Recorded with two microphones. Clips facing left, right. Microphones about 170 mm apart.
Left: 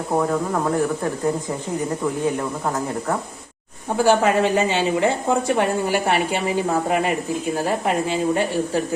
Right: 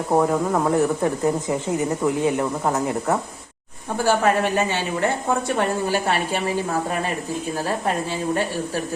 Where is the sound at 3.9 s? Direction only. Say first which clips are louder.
Left 2 dB; 15° left (ahead or behind).